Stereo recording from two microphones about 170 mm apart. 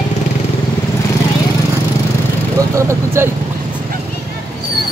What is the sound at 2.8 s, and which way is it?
Speech, 15° right (ahead or behind).